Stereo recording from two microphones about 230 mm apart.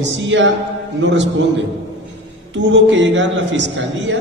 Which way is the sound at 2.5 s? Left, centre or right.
Right.